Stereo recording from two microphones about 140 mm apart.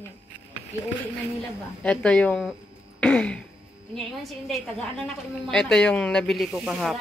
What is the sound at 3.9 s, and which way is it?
Speech, centre (ahead or behind).